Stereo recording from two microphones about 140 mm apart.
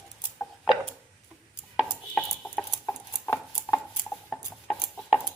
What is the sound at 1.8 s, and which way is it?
Dishes, 5° left (ahead or behind).